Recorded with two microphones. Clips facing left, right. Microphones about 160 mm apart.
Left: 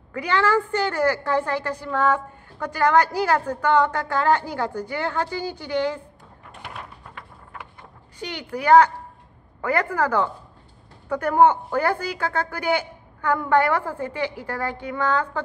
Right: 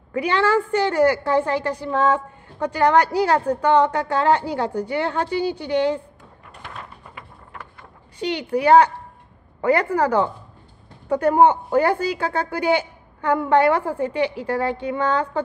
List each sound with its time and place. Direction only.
0.2 s a woman's voice: 15° right (ahead or behind)
8.2 s a woman's voice: 15° right (ahead or behind)